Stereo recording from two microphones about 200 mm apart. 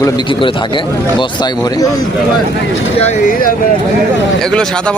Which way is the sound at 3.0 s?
35° left (ahead or behind).